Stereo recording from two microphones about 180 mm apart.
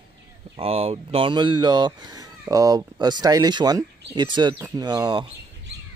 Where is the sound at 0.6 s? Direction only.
35° right (ahead or behind).